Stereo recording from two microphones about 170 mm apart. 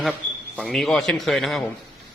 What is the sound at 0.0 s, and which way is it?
A man's voice, centre (ahead or behind).